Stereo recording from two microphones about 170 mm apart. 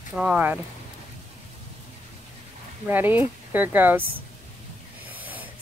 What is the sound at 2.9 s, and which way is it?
Speech, 10° right (ahead or behind).